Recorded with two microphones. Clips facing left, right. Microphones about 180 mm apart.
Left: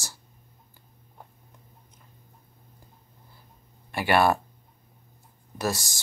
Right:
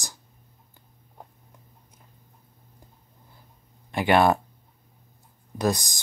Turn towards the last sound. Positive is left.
turn(degrees=-15)  # may be behind; listen again after turning